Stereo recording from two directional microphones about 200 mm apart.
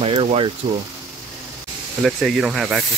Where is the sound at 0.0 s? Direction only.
30° right (ahead or behind).